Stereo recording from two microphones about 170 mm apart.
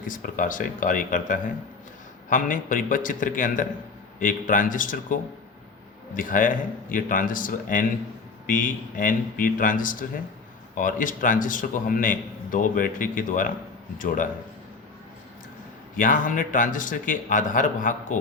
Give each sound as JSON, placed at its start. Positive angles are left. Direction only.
{"t": 0.1, "sound": "a man's voice", "side_deg": 50}
{"t": 16.0, "sound": "a man's voice", "side_deg": 50}